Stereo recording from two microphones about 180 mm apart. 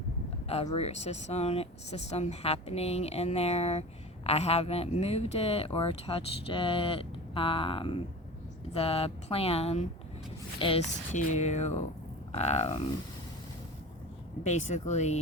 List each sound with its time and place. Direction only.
0.4 s speech: 35° left (ahead or behind)
14.4 s speech: 40° left (ahead or behind)